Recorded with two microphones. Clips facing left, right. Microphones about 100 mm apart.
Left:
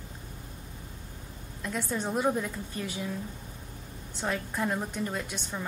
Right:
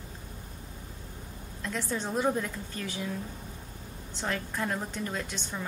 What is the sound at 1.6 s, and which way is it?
A woman's voice, 10° left (ahead or behind).